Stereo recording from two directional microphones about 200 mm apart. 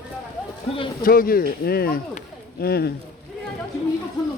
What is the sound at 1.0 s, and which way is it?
Speech, 45° left (ahead or behind).